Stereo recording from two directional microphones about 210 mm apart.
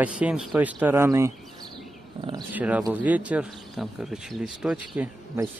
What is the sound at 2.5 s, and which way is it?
Speech, 5° right (ahead or behind).